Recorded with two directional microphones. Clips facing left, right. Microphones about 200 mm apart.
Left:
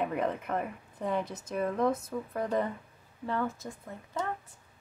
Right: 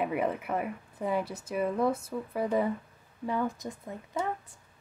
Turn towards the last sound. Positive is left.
turn(degrees=-15)  # may be behind; listen again after turning